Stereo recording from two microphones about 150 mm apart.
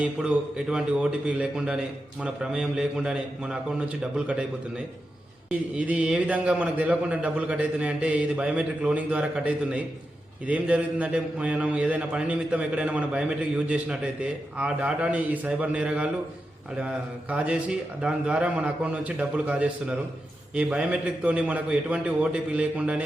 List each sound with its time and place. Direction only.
0.0 s a man's voice: 5° right (ahead or behind)
5.5 s a man's voice: 10° right (ahead or behind)